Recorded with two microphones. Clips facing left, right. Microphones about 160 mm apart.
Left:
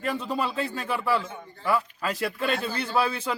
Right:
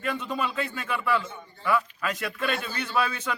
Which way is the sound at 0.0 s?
35° left (ahead or behind).